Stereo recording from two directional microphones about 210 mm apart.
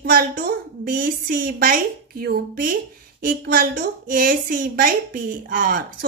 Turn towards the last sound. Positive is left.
turn(degrees=-40)  # may be behind; listen again after turning